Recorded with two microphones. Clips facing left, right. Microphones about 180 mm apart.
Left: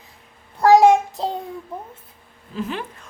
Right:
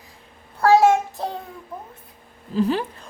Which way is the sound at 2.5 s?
35° right (ahead or behind).